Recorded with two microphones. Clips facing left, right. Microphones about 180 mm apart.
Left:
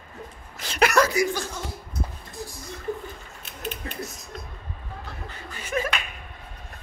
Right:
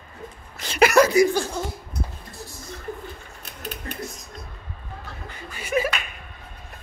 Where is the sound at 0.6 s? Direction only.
5° right (ahead or behind).